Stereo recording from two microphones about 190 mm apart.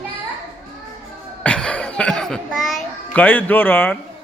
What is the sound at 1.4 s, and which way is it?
A child's voice, 5° left (ahead or behind).